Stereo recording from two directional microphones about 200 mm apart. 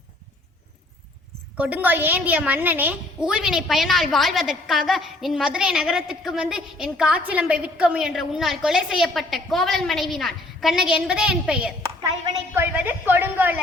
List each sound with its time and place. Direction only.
1.5 s a woman's voice: 10° right (ahead or behind)
11.8 s a woman's voice: 20° right (ahead or behind)
12.7 s a woman's voice: 10° right (ahead or behind)